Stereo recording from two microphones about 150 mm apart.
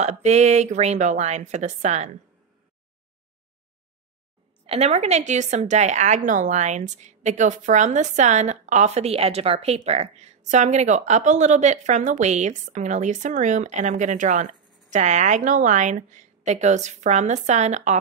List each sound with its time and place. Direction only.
0.0 s speech: 50° right (ahead or behind)
4.6 s speech: 45° right (ahead or behind)